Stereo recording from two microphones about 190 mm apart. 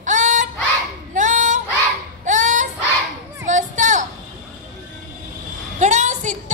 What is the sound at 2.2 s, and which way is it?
Dog, 40° right (ahead or behind).